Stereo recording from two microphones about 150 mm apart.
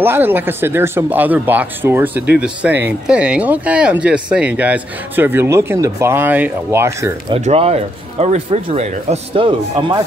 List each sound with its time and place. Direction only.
0.0 s speech: 15° right (ahead or behind)
7.2 s speech: 40° right (ahead or behind)